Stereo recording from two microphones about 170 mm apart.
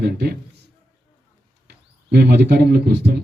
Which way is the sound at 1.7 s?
70° right (ahead or behind).